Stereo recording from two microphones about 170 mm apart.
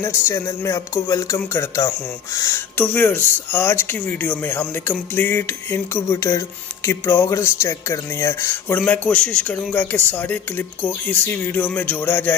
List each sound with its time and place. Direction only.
0.0 s speech: 15° left (ahead or behind)